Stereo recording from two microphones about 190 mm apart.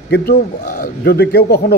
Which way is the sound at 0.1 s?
55° left (ahead or behind).